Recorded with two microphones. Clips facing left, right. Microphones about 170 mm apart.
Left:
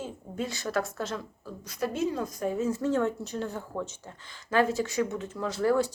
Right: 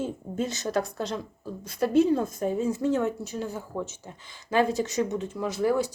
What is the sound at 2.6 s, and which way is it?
Speech, 10° right (ahead or behind).